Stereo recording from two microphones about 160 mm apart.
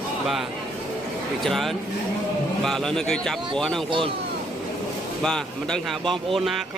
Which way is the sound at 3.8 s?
30° right (ahead or behind).